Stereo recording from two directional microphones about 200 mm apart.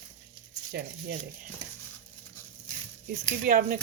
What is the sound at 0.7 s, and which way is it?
Speech, 55° right (ahead or behind).